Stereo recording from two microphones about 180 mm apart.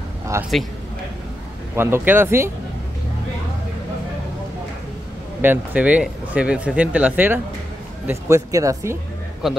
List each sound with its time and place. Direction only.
0.3 s speech: 15° right (ahead or behind)
1.8 s speech: 10° right (ahead or behind)
5.4 s speech: 10° right (ahead or behind)
9.4 s a man's voice: centre (ahead or behind)